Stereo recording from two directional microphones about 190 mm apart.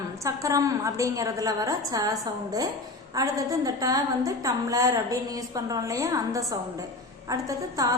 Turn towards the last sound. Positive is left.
turn(degrees=-15)  # may be behind; listen again after turning